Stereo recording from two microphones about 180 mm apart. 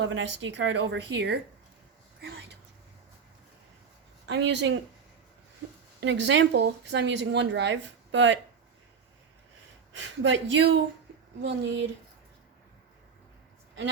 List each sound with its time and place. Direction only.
0.0 s a woman's voice: 90° right
4.3 s speech: 75° right (ahead or behind)
6.0 s speech: 85° right
9.9 s a woman's voice: 90° right
11.4 s speech: 75° right (ahead or behind)